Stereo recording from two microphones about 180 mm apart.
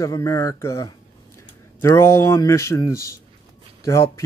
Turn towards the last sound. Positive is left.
turn(degrees=15)  # may be behind; listen again after turning